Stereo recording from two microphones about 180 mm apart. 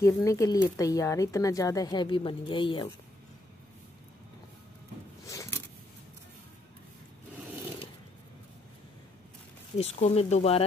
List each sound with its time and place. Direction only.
0.0 s a woman's voice: 15° left (ahead or behind)
5.2 s a sound: 15° left (ahead or behind)
9.8 s speech: 35° left (ahead or behind)